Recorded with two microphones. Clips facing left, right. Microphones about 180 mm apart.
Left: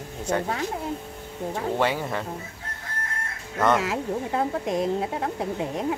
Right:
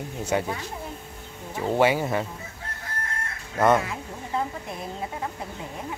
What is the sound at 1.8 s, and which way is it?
Speech, 10° right (ahead or behind).